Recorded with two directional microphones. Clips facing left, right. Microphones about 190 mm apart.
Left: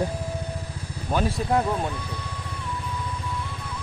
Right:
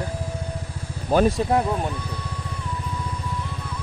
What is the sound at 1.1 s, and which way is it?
Speech, 35° right (ahead or behind).